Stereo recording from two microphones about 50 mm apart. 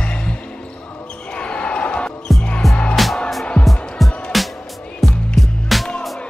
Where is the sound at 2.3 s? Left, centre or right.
Left.